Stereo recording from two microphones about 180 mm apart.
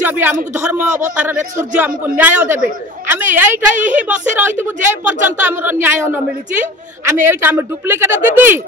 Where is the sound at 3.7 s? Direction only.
45° right (ahead or behind).